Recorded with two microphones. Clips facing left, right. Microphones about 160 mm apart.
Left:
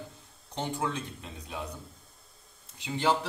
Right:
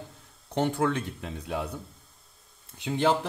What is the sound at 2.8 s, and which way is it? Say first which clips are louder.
Speech: right 3 dB; 60° right (ahead or behind).